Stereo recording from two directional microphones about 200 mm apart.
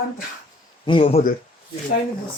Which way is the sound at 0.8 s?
25° left (ahead or behind).